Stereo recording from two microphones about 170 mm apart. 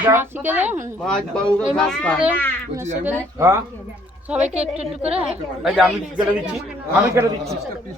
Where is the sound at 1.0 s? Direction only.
5° left (ahead or behind).